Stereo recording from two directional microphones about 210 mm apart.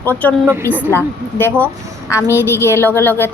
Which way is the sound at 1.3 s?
10° left (ahead or behind).